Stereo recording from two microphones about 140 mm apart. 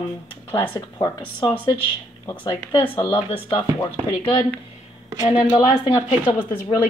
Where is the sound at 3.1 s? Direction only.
30° left (ahead or behind).